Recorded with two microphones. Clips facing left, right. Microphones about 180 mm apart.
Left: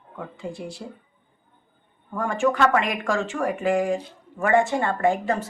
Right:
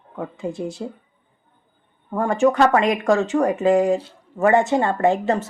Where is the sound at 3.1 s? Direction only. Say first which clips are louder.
Right 6 dB; 20° right (ahead or behind).